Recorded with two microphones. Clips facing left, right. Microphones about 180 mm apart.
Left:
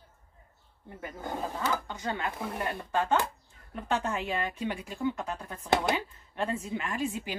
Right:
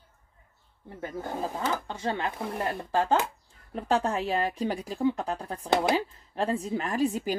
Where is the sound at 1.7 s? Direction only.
30° right (ahead or behind).